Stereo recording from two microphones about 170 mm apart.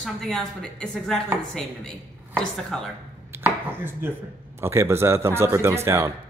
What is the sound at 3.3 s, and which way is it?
Speech, 10° right (ahead or behind).